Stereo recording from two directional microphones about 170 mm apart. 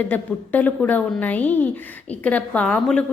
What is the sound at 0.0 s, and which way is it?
A woman's voice, 10° left (ahead or behind).